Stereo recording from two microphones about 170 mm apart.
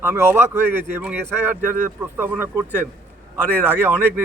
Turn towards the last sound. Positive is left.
turn(degrees=-10)  # may be behind; listen again after turning